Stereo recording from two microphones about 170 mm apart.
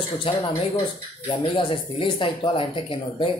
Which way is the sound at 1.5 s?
30° left (ahead or behind).